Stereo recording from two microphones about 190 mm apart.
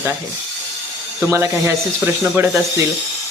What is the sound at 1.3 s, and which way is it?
Speech, 15° right (ahead or behind).